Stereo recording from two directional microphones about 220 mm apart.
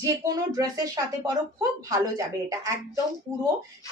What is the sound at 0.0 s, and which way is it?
Speech, 15° right (ahead or behind).